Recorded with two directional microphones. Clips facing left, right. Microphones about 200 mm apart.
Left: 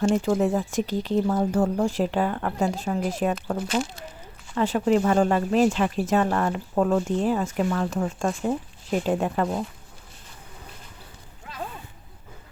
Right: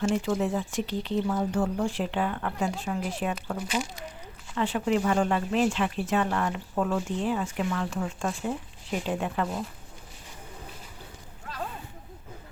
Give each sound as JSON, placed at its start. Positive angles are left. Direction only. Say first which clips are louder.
{"t": 0.1, "sound": "speech", "louder": "left 5 dB", "side_deg": 45}